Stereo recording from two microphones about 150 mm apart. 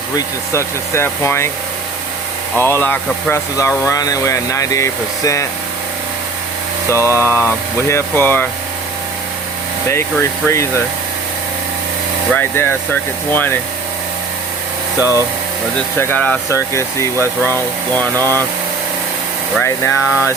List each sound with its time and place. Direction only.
0.2 s speech: 15° left (ahead or behind)
2.6 s speech: 15° left (ahead or behind)
6.9 s speech: 20° left (ahead or behind)
9.9 s speech: 20° left (ahead or behind)
12.3 s speech: 10° left (ahead or behind)
16.0 s speech: 10° left (ahead or behind)
19.6 s speech: 20° left (ahead or behind)